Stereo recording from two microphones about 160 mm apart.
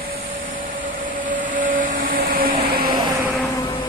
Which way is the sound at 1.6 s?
60° right (ahead or behind).